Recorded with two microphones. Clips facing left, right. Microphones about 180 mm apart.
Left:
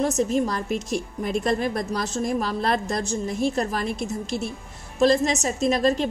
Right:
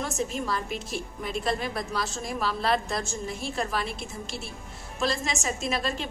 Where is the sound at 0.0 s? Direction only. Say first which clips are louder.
Left 9 dB; 40° left (ahead or behind).